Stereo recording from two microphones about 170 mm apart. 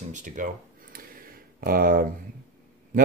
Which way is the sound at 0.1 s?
50° right (ahead or behind).